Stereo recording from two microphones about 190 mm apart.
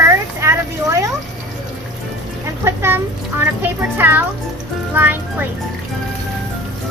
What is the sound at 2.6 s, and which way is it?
Speech, 15° right (ahead or behind).